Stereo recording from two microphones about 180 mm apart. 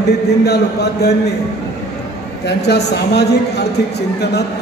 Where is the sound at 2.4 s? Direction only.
70° left (ahead or behind).